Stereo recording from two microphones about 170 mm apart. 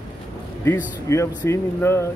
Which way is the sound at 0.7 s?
15° left (ahead or behind).